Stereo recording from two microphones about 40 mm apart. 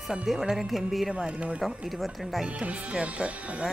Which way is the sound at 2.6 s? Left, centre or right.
Right.